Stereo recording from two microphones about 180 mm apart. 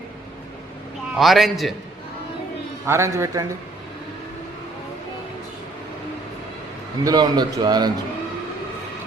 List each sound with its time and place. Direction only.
1.1 s a man's voice: centre (ahead or behind)
2.8 s a man's voice: 15° right (ahead or behind)
7.0 s a man's voice: 25° right (ahead or behind)